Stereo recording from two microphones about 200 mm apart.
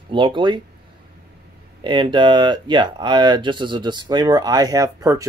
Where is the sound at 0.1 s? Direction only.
25° right (ahead or behind).